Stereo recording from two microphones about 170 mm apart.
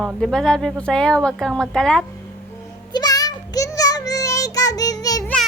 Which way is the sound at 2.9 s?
25° left (ahead or behind).